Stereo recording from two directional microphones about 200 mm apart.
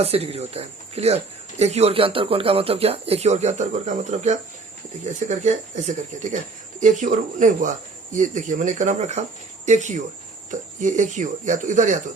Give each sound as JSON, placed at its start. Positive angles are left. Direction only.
{"t": 0.0, "sound": "speech", "side_deg": -30}